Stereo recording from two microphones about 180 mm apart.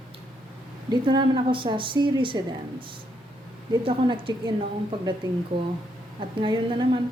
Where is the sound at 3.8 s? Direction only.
30° right (ahead or behind).